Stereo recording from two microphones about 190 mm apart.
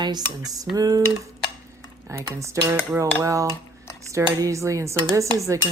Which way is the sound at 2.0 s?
15° right (ahead or behind).